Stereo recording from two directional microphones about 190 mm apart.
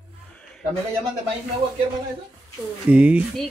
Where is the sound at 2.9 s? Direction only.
10° right (ahead or behind).